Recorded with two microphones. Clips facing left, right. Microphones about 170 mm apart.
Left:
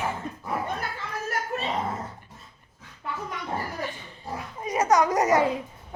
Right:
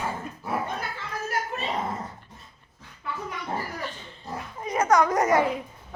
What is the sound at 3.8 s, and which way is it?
Pig, 15° left (ahead or behind).